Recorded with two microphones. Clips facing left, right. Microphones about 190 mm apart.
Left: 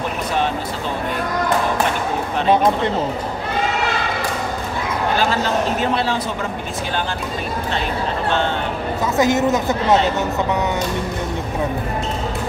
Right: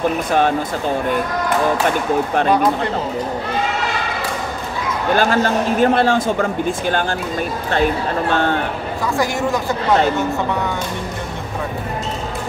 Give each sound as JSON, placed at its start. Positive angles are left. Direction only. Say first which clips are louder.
{"t": 5.1, "sound": "a man's voice", "louder": "right 5 dB", "side_deg": -50}
{"t": 9.1, "sound": "speech", "louder": "left 3 dB", "side_deg": 20}